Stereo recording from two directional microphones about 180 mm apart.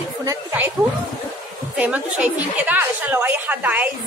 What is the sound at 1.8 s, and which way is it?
A woman's voice, 5° right (ahead or behind).